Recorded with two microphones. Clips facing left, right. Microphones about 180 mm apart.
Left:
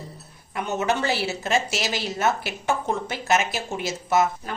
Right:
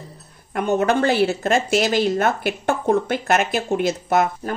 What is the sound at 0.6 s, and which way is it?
A woman's voice, 55° right (ahead or behind).